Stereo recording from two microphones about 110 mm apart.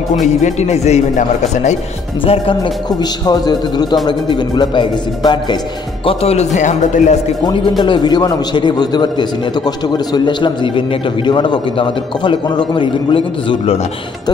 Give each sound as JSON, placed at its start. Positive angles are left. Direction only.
{"t": 0.4, "sound": "speech", "side_deg": 90}
{"t": 2.2, "sound": "speech", "side_deg": 55}
{"t": 2.9, "sound": "a man's voice", "side_deg": 35}
{"t": 6.0, "sound": "speech", "side_deg": 70}
{"t": 7.8, "sound": "a man's voice", "side_deg": 45}